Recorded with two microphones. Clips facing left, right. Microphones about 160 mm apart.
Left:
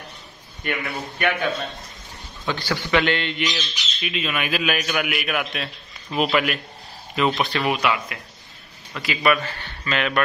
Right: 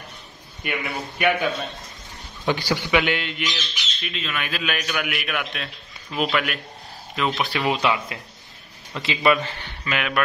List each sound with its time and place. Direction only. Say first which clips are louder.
0.7 s a man's voice: left 1 dB; 5° right (ahead or behind)
3.5 s speech: left 3 dB; 10° left (ahead or behind)
7.5 s a man's voice: even; 20° right (ahead or behind)